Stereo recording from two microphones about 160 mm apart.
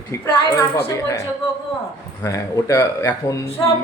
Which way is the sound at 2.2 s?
20° left (ahead or behind).